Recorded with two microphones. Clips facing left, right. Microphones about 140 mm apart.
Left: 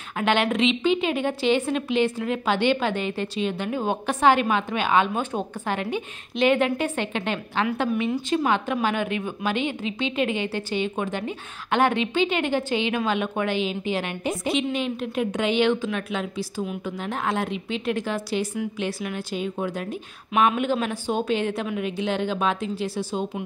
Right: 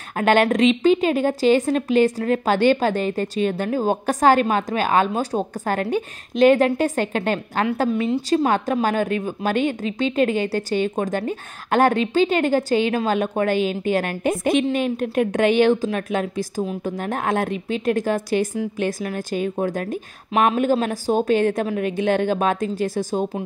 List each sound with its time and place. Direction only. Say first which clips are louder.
0.2 s a woman's voice: right 5 dB; 45° right (ahead or behind)
8.1 s a woman's voice: right 5 dB; 30° right (ahead or behind)
8.5 s a woman's voice: right 3 dB; 40° right (ahead or behind)